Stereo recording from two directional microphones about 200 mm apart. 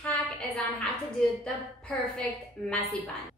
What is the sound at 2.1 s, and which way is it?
Speech, 5° left (ahead or behind).